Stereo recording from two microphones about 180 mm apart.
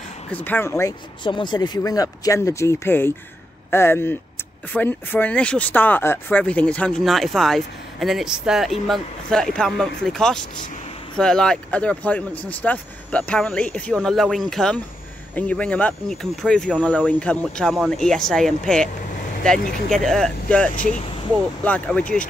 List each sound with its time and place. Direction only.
0.3 s speech: 10° left (ahead or behind)
1.2 s speech: 25° left (ahead or behind); by 18.9 s 5° left (ahead or behind)
19.6 s speech: 55° left (ahead or behind)
19.9 s speech: 5° left (ahead or behind)